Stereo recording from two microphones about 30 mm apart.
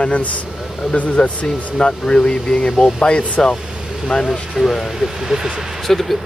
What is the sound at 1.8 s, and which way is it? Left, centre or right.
Speech, left.